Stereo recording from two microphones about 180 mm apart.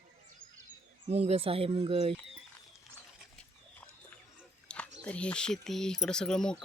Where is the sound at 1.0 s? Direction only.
35° right (ahead or behind).